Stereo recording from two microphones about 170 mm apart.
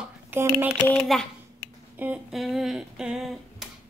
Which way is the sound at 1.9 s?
10° right (ahead or behind).